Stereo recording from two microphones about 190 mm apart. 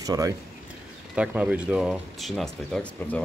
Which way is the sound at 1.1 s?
5° right (ahead or behind).